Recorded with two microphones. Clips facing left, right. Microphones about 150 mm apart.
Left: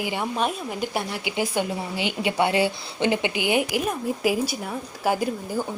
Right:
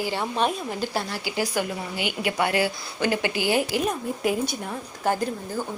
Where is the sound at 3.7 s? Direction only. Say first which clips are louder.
Even; 5° left (ahead or behind).